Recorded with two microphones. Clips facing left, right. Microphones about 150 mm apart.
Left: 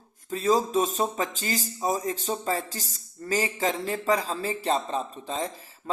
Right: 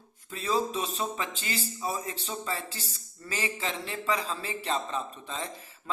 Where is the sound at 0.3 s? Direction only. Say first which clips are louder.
Left 5 dB; 40° left (ahead or behind).